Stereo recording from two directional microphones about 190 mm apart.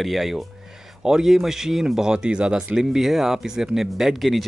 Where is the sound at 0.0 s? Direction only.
Centre (ahead or behind).